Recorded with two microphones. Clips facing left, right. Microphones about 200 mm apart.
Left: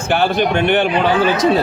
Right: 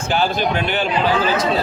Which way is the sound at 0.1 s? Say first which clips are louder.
Left 4 dB; 60° left (ahead or behind).